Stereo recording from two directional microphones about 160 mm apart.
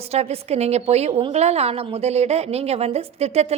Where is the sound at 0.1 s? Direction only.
40° right (ahead or behind).